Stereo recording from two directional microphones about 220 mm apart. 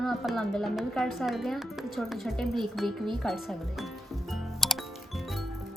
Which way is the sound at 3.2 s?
Centre (ahead or behind).